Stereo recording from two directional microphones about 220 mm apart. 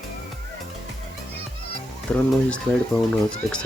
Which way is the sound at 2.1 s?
5° left (ahead or behind).